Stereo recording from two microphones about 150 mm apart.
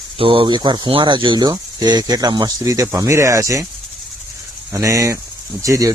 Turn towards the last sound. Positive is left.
turn(degrees=-20)  # may be behind; listen again after turning